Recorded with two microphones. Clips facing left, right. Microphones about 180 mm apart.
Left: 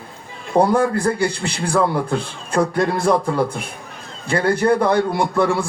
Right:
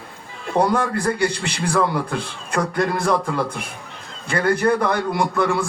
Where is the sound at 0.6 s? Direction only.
30° left (ahead or behind).